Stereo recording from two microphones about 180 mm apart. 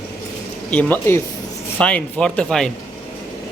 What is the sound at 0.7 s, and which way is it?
Speech, 10° left (ahead or behind).